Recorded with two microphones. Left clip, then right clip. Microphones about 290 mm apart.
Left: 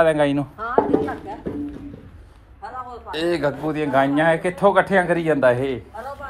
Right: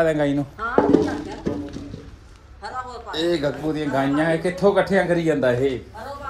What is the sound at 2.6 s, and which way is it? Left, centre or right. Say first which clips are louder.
A man's voice: right 1 dB; centre.